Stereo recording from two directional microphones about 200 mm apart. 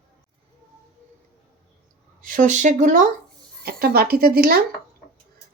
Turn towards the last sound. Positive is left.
turn(degrees=-50)  # may be behind; listen again after turning